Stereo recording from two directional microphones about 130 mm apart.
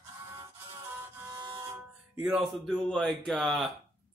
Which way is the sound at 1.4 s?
35° right (ahead or behind).